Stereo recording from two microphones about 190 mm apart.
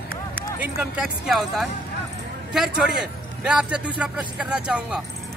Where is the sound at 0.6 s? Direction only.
5° right (ahead or behind).